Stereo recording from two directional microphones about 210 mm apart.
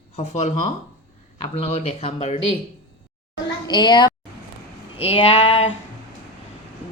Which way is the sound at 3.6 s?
20° left (ahead or behind).